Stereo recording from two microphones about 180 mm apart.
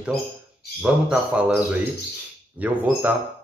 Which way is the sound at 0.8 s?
5° right (ahead or behind).